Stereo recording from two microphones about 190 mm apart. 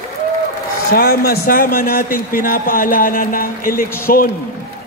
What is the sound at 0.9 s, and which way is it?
A man's voice, 50° left (ahead or behind).